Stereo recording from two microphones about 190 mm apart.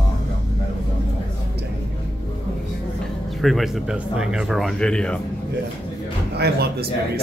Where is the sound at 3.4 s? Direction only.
Centre (ahead or behind).